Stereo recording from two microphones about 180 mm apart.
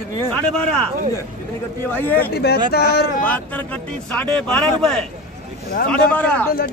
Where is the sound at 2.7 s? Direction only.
60° left (ahead or behind).